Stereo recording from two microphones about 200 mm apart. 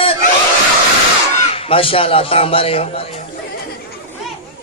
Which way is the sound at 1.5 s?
30° left (ahead or behind).